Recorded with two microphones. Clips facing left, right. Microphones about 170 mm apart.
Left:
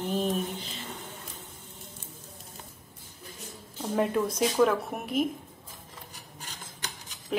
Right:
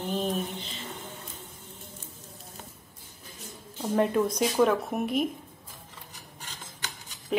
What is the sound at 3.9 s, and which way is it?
Speech, centre (ahead or behind).